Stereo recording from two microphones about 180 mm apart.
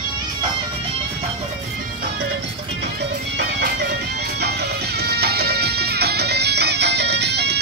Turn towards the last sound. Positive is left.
turn(degrees=-65)  # may be behind; listen again after turning